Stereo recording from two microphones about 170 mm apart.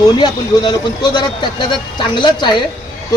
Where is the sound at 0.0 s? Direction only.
25° left (ahead or behind).